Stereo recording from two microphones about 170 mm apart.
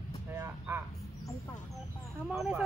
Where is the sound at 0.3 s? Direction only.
15° right (ahead or behind).